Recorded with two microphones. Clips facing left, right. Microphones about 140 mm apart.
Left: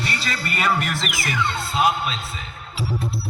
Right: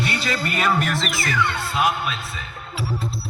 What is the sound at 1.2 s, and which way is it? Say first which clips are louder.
Speech: left 1 dB; 20° left (ahead or behind).